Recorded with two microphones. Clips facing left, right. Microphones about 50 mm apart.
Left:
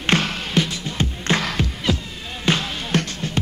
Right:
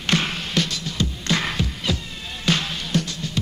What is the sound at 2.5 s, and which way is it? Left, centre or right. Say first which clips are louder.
Music: left 2 dB; left.